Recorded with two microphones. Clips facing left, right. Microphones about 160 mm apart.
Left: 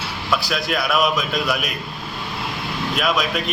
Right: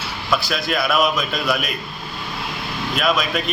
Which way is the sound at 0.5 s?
Centre (ahead or behind).